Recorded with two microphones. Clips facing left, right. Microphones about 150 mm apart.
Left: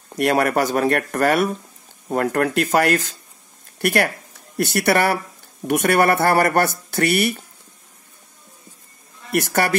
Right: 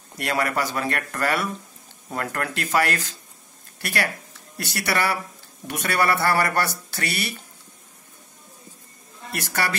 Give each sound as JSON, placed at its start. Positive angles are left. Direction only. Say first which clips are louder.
{"t": 0.2, "sound": "speech", "louder": "left 7 dB", "side_deg": 50}
{"t": 9.4, "sound": "speech", "louder": "left 7 dB", "side_deg": 50}